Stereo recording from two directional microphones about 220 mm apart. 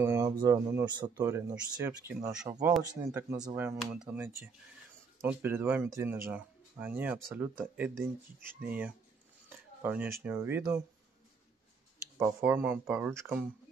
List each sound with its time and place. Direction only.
0.0 s speech: 15° right (ahead or behind)
1.9 s speech: 5° right (ahead or behind)
12.2 s speech: 10° right (ahead or behind)